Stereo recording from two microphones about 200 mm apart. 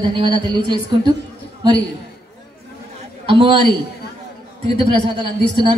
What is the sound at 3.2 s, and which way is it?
Speech, 25° right (ahead or behind).